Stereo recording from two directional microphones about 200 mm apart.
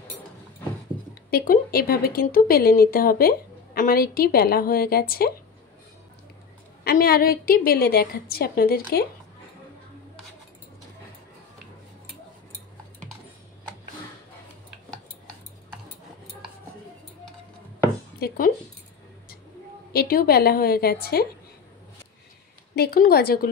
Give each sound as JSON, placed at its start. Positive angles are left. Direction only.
{"t": 1.3, "sound": "speech", "side_deg": 45}
{"t": 6.8, "sound": "speech", "side_deg": 50}
{"t": 18.2, "sound": "speech", "side_deg": 50}
{"t": 19.9, "sound": "speech", "side_deg": 50}
{"t": 22.8, "sound": "speech", "side_deg": 50}